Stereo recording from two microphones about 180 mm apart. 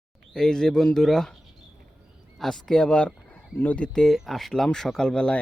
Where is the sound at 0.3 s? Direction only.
5° left (ahead or behind).